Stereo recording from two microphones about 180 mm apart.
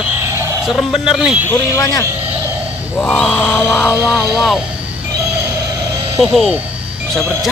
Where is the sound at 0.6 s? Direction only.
Centre (ahead or behind).